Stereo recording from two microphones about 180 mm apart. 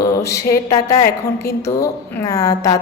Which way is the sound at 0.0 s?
15° left (ahead or behind).